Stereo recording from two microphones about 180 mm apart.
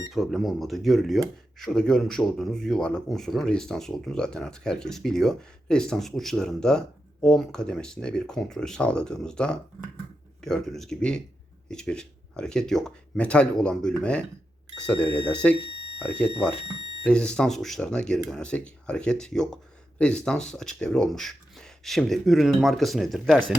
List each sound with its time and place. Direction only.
0.1 s speech: centre (ahead or behind)
15.7 s a sound: 30° right (ahead or behind)
16.6 s smoke detector: 25° right (ahead or behind)
17.0 s speech: 5° left (ahead or behind)